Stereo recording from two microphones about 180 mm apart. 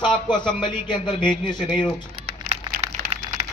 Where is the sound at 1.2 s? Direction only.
5° right (ahead or behind).